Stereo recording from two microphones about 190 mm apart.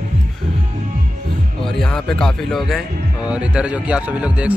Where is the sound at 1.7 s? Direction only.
5° left (ahead or behind).